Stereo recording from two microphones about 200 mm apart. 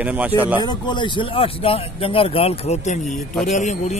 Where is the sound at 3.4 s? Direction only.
35° left (ahead or behind).